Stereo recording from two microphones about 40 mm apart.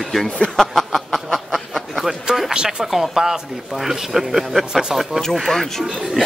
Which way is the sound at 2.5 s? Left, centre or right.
Centre.